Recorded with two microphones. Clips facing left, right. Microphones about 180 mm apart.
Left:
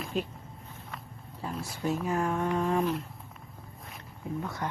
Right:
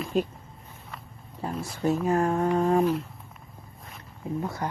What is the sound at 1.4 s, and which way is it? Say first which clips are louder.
Speech: right 5 dB; 45° right (ahead or behind).